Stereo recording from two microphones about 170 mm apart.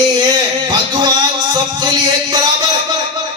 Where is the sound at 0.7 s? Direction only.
25° right (ahead or behind).